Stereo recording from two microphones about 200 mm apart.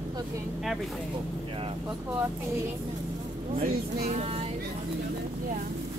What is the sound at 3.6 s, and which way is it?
Speech, 35° right (ahead or behind).